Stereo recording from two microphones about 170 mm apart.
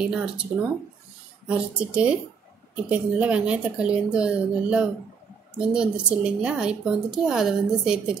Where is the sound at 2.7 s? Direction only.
10° right (ahead or behind).